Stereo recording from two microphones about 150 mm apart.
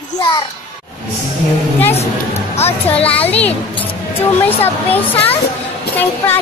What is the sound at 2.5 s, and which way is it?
Speech, 40° left (ahead or behind).